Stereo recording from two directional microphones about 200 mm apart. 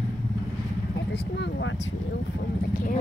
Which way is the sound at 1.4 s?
65° left (ahead or behind).